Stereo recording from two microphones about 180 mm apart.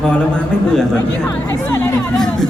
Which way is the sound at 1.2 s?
15° left (ahead or behind).